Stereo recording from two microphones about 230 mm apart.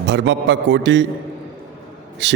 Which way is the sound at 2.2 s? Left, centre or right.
Right.